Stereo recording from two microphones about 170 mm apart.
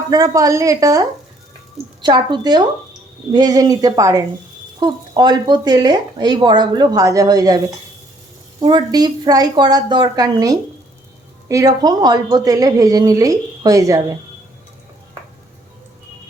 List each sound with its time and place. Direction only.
0.1 s speech: 20° right (ahead or behind)
8.6 s speech: 25° right (ahead or behind)